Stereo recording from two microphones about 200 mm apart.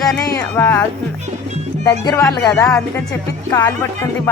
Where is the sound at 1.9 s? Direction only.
15° left (ahead or behind).